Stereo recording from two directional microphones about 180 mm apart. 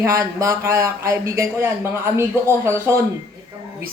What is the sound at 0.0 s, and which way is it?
Speech, 15° right (ahead or behind).